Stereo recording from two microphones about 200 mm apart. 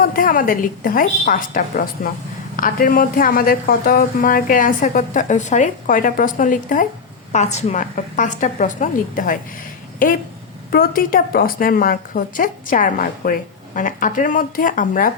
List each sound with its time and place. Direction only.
0.0 s a woman's voice: 45° left (ahead or behind)
10.7 s a woman's voice: 45° left (ahead or behind)